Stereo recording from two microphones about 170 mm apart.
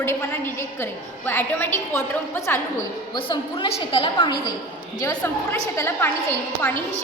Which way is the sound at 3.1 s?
30° left (ahead or behind).